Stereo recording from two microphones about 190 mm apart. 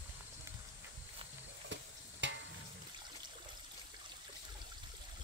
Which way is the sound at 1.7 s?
70° right (ahead or behind).